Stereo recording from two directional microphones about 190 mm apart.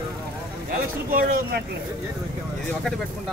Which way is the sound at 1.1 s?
50° right (ahead or behind).